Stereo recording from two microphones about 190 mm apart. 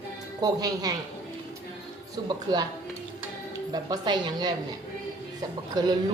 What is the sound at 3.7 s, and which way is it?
Speech, 20° right (ahead or behind).